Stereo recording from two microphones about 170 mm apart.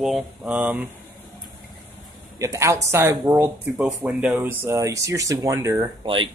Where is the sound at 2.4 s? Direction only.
15° right (ahead or behind).